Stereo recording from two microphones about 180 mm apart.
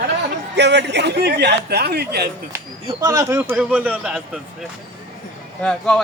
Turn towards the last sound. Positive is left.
turn(degrees=5)  # may be behind; listen again after turning